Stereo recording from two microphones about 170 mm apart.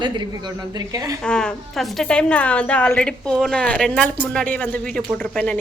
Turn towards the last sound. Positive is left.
turn(degrees=5)  # may be behind; listen again after turning